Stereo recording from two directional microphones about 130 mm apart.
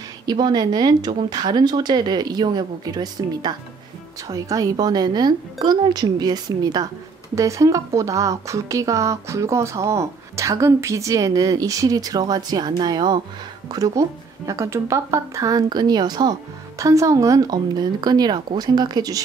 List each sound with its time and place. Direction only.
0.3 s a woman's voice: 30° right (ahead or behind)